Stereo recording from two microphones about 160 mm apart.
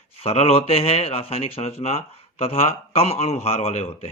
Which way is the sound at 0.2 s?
40° left (ahead or behind).